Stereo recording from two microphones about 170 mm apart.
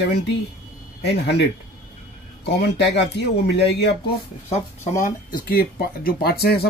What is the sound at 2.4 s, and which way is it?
Speech, 85° left.